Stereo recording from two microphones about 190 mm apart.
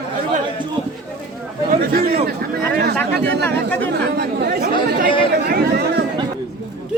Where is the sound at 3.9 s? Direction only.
60° right (ahead or behind).